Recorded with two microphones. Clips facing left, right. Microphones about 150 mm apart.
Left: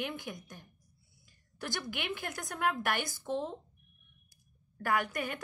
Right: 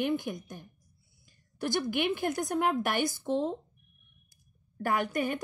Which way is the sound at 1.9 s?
20° right (ahead or behind).